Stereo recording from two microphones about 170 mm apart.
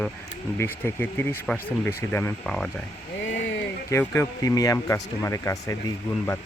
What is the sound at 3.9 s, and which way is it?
Speech, 15° left (ahead or behind).